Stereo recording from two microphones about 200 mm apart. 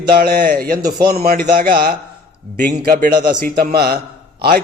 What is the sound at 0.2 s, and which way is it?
Speech, 45° right (ahead or behind).